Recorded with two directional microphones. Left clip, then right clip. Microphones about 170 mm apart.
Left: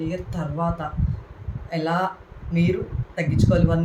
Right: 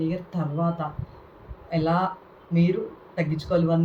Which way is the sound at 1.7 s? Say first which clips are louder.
Even; centre (ahead or behind).